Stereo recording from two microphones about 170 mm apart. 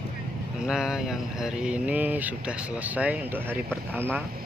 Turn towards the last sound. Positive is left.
turn(degrees=-10)  # may be behind; listen again after turning